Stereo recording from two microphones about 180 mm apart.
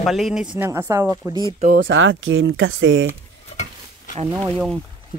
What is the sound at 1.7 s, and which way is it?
Speech, 90° right.